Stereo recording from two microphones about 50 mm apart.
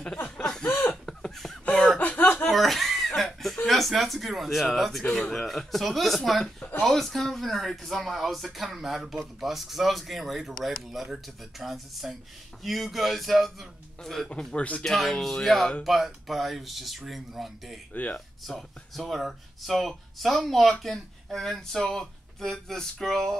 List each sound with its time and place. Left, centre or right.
0.4 s chuckle: centre
1.0 s a sound: centre
2.0 s chuckle: left
2.5 s chuckle: centre
3.6 s speech: centre
5.1 s music: centre
5.5 s speech: centre
14.5 s speech: left
14.9 s speech: centre
15.8 s speech: centre
17.9 s speech: left
18.9 s speech: centre
21.8 s music: centre